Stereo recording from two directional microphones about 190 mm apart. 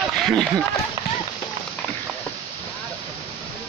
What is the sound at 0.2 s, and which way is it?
Speech, centre (ahead or behind).